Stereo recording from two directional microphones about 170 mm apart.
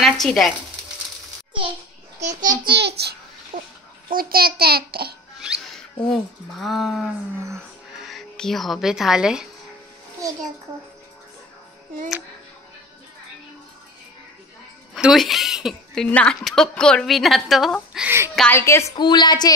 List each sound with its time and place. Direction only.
0.0 s frying: centre (ahead or behind)
2.4 s a child's voice: 65° right (ahead or behind)
3.5 s a sound: 50° right (ahead or behind)
4.1 s a child's voice: 60° right (ahead or behind)
5.4 s music: centre (ahead or behind)
6.0 s speech: centre (ahead or behind)
15.0 s speech: centre (ahead or behind)
17.9 s speech: 10° right (ahead or behind)
18.5 s a woman's voice: 15° left (ahead or behind)